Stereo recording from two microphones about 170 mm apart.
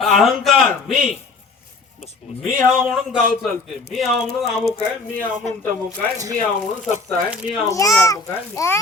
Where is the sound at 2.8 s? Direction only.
5° right (ahead or behind).